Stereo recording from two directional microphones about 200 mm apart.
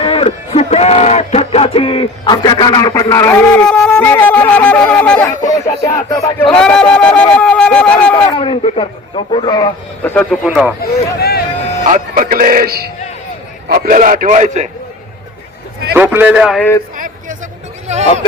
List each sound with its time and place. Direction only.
0.0 s speech: 25° left (ahead or behind)
6.5 s speech: 5° left (ahead or behind)
8.1 s speech: 25° left (ahead or behind)
10.0 s speech: 5° left (ahead or behind)
11.2 s vehicle: 50° left (ahead or behind)
11.9 s a man's voice: 40° right (ahead or behind)
16.0 s speech: 10° right (ahead or behind)
16.6 s speech: 10° left (ahead or behind)
17.9 s a sound: 35° right (ahead or behind)